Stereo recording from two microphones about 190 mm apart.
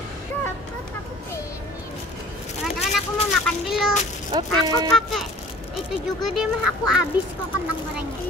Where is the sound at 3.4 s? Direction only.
Centre (ahead or behind).